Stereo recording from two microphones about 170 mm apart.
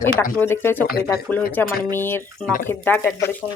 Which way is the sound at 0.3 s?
15° left (ahead or behind).